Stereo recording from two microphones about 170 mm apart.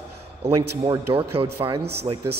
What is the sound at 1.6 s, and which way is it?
Speech, 35° right (ahead or behind).